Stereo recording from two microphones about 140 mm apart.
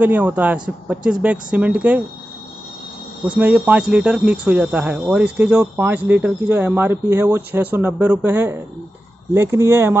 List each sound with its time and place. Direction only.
0.0 s speech: 10° right (ahead or behind)
3.3 s speech: 10° right (ahead or behind)